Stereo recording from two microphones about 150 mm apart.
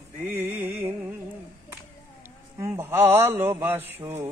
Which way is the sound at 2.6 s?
20° right (ahead or behind).